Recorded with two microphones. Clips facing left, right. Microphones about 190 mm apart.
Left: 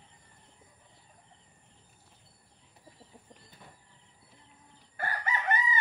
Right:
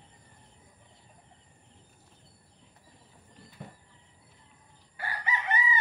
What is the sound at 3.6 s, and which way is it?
Train, 55° right (ahead or behind).